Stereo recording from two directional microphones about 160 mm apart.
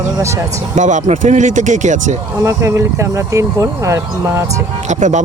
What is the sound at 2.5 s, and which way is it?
Speech, 15° right (ahead or behind).